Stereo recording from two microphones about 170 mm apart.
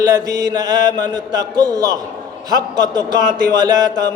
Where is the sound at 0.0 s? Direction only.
20° right (ahead or behind).